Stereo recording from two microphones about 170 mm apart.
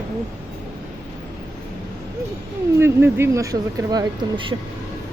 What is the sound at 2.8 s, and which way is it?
Speech, 15° right (ahead or behind).